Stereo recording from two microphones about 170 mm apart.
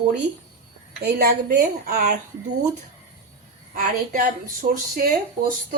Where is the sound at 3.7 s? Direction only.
50° right (ahead or behind).